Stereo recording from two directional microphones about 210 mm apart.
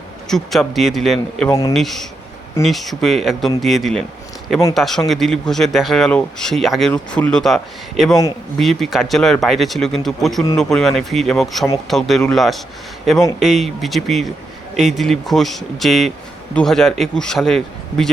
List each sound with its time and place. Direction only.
0.3 s speech: centre (ahead or behind)
1.5 s speech: 15° left (ahead or behind)
1.7 s speech: centre (ahead or behind)